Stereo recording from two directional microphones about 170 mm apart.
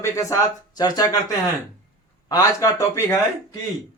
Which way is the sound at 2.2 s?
20° left (ahead or behind).